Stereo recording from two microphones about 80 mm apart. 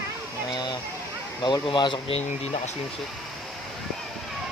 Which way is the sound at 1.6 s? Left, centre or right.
Left.